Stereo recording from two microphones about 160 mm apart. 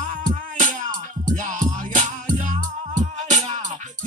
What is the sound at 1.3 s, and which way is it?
Music, 50° right (ahead or behind).